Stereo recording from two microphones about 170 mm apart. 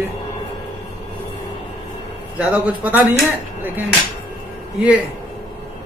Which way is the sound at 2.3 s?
10° right (ahead or behind).